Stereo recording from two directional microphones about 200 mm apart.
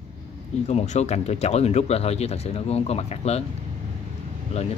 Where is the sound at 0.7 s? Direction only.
35° left (ahead or behind).